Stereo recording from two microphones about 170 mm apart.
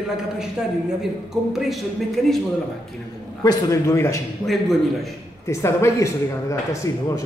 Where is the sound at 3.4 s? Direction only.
20° left (ahead or behind).